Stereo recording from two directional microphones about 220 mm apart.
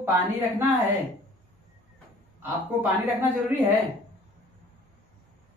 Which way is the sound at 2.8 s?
10° right (ahead or behind).